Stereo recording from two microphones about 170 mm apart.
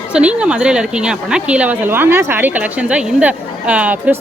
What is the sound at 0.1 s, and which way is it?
A woman's voice, 5° right (ahead or behind).